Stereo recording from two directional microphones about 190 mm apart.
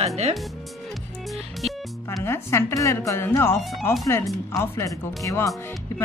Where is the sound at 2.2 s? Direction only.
15° left (ahead or behind).